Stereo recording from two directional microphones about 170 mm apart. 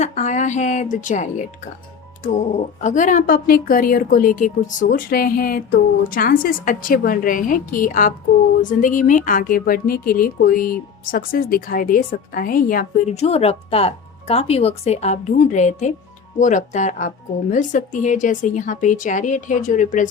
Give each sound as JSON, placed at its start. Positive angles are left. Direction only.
{"t": 0.0, "sound": "a woman's voice", "side_deg": 45}
{"t": 13.1, "sound": "a woman's voice", "side_deg": 35}